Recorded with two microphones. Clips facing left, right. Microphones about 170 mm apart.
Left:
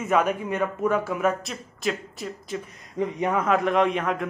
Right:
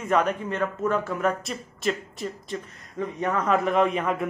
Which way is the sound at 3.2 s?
10° left (ahead or behind).